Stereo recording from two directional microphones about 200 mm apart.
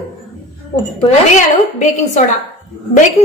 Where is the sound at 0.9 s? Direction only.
35° left (ahead or behind).